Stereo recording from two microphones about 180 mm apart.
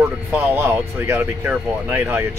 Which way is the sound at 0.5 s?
15° right (ahead or behind).